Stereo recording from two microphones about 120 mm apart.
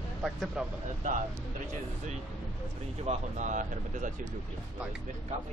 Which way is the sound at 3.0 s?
90° right.